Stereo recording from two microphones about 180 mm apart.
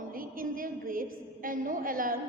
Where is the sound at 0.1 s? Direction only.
50° right (ahead or behind).